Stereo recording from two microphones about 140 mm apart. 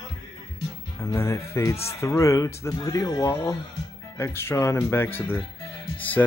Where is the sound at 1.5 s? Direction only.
20° left (ahead or behind).